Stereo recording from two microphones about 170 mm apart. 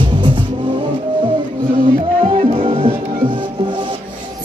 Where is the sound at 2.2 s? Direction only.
35° right (ahead or behind).